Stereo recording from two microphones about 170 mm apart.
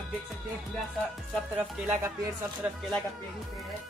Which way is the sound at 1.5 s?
10° right (ahead or behind).